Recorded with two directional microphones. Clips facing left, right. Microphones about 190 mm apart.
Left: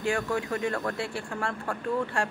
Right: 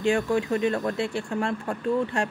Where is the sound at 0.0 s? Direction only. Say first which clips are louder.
Right 5 dB; 25° right (ahead or behind).